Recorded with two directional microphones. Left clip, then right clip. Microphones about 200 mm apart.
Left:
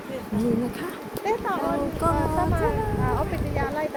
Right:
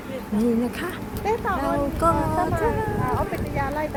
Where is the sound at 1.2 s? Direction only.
50° right (ahead or behind).